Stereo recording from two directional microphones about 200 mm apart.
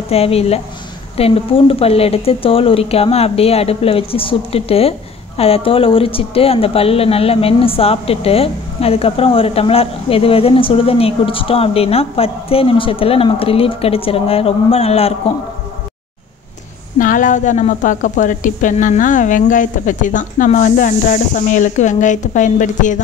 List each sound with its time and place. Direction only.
0.1 s a woman's voice: 30° left (ahead or behind)
17.0 s a woman's voice: 40° left (ahead or behind)